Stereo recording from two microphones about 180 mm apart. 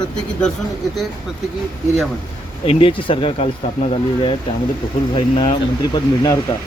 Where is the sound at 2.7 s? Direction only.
30° left (ahead or behind).